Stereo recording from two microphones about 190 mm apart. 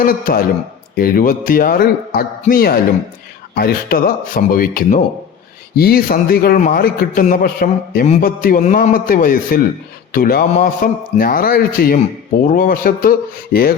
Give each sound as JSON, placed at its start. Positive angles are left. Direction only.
{"t": 0.0, "sound": "speech", "side_deg": 50}